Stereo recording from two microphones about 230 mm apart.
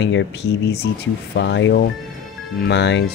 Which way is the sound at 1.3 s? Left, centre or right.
Left.